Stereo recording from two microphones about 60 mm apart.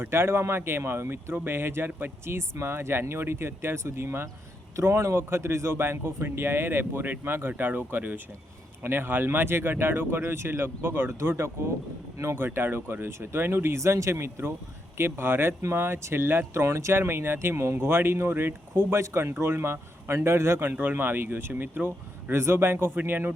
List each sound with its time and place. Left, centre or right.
0.0 s speech: right
16.6 s speech: right